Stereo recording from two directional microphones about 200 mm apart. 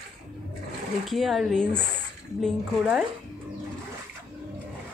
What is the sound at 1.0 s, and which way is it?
Speech, centre (ahead or behind).